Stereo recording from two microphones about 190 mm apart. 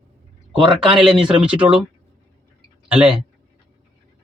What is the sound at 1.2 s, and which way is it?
Speech, 5° right (ahead or behind).